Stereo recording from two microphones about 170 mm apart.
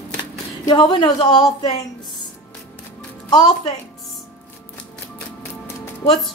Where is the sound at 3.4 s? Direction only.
40° left (ahead or behind).